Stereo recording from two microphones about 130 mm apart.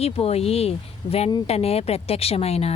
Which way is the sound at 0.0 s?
50° left (ahead or behind).